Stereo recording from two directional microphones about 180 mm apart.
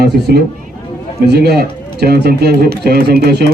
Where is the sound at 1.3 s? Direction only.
65° right (ahead or behind).